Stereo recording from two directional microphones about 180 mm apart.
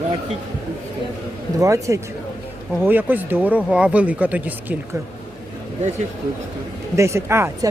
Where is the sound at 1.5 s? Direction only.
20° right (ahead or behind).